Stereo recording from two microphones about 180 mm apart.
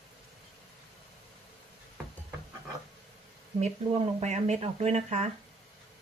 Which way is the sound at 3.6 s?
40° right (ahead or behind).